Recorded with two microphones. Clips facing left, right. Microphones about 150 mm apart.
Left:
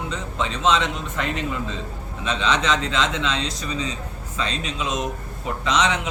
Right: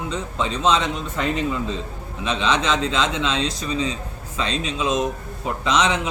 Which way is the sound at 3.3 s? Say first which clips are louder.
Right 3 dB; 30° right (ahead or behind).